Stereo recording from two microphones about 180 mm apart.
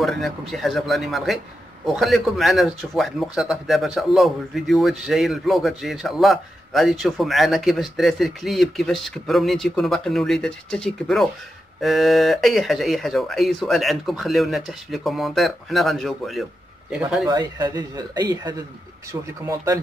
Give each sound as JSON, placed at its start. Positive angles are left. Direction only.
{"t": 0.0, "sound": "speech", "side_deg": 0}
{"t": 17.3, "sound": "speech", "side_deg": -20}